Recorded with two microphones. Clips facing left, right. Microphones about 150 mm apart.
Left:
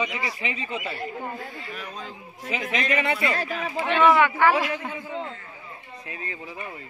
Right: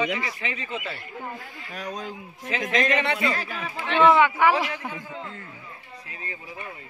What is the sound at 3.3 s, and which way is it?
Speech, 35° left (ahead or behind).